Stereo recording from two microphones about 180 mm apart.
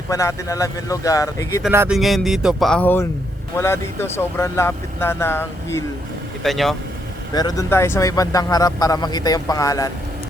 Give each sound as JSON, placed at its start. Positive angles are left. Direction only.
{"t": 0.1, "sound": "speech", "side_deg": 15}
{"t": 1.7, "sound": "speech", "side_deg": -15}
{"t": 2.0, "sound": "speech", "side_deg": 0}
{"t": 6.4, "sound": "speech", "side_deg": 0}
{"t": 7.3, "sound": "speech", "side_deg": 20}